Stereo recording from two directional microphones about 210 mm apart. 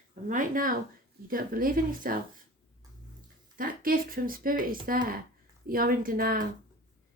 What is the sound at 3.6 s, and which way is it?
A woman's voice, 45° right (ahead or behind).